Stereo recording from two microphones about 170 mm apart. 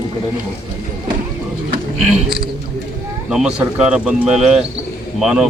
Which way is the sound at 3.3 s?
5° right (ahead or behind).